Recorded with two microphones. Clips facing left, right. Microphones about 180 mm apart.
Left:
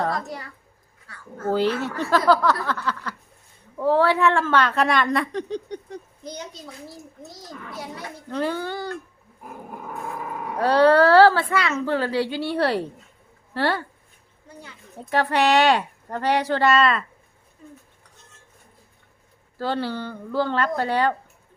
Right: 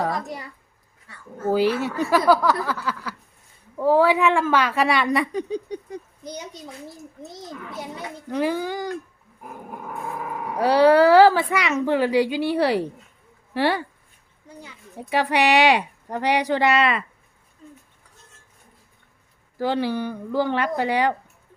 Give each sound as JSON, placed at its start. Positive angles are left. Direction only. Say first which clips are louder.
{"t": 0.0, "sound": "a child's voice", "louder": "even", "side_deg": -15}
{"t": 9.7, "sound": "speech", "louder": "right 1 dB", "side_deg": 0}
{"t": 19.5, "sound": "speech", "louder": "right 3 dB", "side_deg": -15}